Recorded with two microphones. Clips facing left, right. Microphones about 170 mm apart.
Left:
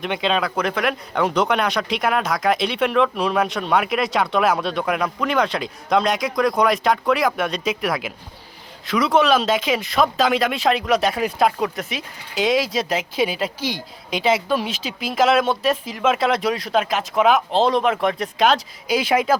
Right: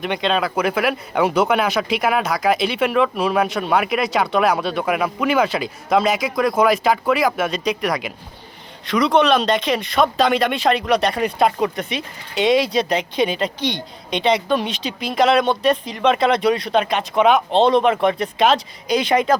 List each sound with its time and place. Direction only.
0.0 s speech: centre (ahead or behind)